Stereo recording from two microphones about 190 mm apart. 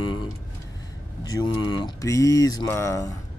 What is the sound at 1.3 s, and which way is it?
Speech, 20° left (ahead or behind).